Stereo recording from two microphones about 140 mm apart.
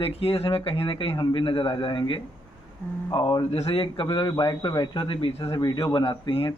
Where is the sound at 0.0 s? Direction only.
45° left (ahead or behind).